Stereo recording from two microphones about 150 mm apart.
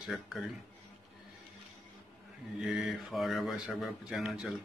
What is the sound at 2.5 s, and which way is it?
Speech, 5° right (ahead or behind).